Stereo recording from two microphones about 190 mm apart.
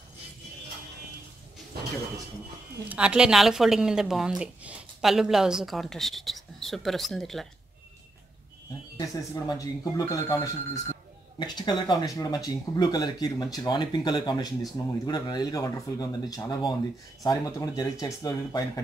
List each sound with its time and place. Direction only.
2.9 s speech: 5° right (ahead or behind)
8.9 s speech: 20° left (ahead or behind)